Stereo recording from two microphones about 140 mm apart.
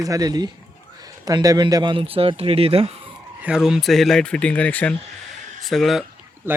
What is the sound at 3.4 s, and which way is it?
Speech, 5° right (ahead or behind).